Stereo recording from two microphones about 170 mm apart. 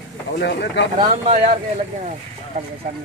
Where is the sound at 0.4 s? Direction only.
75° left (ahead or behind).